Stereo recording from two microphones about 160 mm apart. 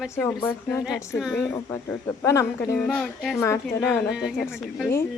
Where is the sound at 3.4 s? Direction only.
20° left (ahead or behind).